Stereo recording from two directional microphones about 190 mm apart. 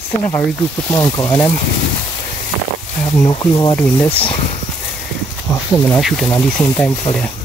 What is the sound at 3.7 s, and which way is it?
Speech, 10° left (ahead or behind).